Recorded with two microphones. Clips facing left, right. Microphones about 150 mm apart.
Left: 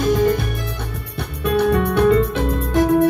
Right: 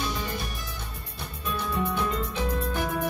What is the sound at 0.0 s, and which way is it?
Music, 50° left (ahead or behind).